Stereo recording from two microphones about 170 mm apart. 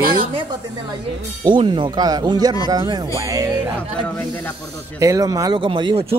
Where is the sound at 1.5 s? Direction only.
30° right (ahead or behind).